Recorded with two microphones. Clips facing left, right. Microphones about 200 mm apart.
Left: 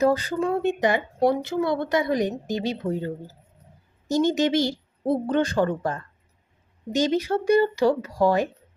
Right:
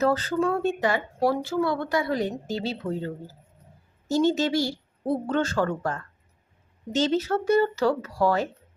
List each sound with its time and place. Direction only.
0.0 s speech: 15° left (ahead or behind)
4.1 s speech: 15° left (ahead or behind)